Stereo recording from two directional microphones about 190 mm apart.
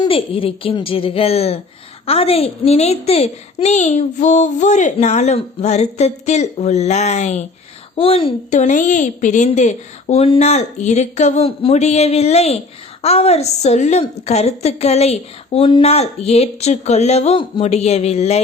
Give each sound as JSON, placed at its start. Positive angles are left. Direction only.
{"t": 0.0, "sound": "a woman's voice", "side_deg": 30}